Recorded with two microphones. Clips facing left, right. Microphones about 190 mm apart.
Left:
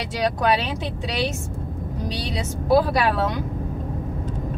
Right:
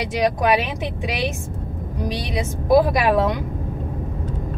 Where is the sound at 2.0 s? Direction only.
20° right (ahead or behind).